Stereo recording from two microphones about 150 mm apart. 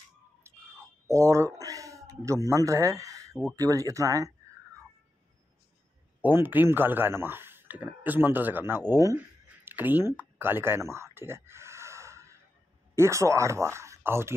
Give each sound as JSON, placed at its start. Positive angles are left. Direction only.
{"t": 0.4, "sound": "cat", "side_deg": -20}
{"t": 3.5, "sound": "speech", "side_deg": -20}
{"t": 6.2, "sound": "speech", "side_deg": -10}
{"t": 9.7, "sound": "a sound", "side_deg": -10}
{"t": 12.9, "sound": "speech", "side_deg": -20}